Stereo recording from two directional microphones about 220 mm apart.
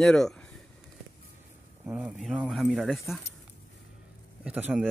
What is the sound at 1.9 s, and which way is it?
Speech, 5° right (ahead or behind).